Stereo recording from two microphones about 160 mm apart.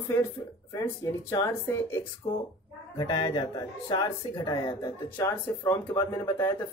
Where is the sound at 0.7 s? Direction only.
20° left (ahead or behind).